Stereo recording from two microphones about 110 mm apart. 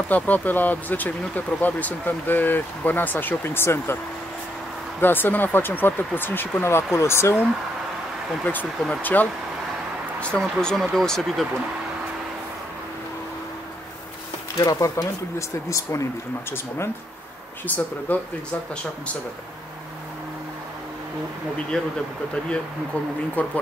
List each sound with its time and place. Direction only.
0.1 s speech: 15° left (ahead or behind)
5.0 s speech: 20° left (ahead or behind)
9.0 s speech: 15° left (ahead or behind)
10.4 s speech: 5° left (ahead or behind)
14.6 s speech: 30° left (ahead or behind)
21.7 s speech: 5° left (ahead or behind)
23.4 s speech: 15° left (ahead or behind)